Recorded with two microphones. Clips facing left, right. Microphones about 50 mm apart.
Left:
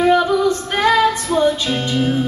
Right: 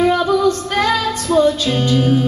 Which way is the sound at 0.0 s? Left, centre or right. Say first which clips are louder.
Even; centre.